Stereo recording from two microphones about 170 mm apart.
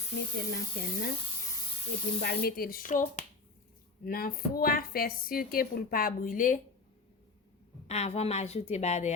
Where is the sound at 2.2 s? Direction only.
65° left (ahead or behind).